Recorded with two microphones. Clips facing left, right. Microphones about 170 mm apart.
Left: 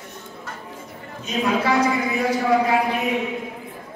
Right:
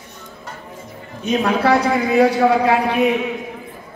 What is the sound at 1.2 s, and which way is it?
Speech, 65° right (ahead or behind).